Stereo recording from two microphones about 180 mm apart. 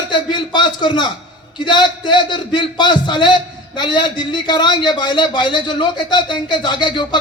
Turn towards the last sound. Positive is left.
turn(degrees=25)  # may be behind; listen again after turning